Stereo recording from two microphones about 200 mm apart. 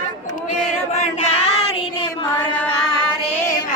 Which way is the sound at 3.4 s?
15° left (ahead or behind).